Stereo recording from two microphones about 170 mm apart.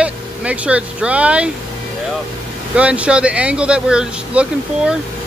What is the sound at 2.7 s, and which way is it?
Speech, 5° right (ahead or behind).